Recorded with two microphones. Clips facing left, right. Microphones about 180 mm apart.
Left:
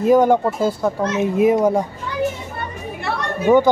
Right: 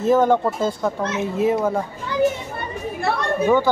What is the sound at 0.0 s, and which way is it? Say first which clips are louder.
Speech: left 3 dB; 10° left (ahead or behind).